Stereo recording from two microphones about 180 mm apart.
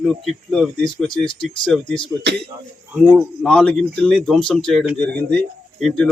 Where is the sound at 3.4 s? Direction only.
5° left (ahead or behind).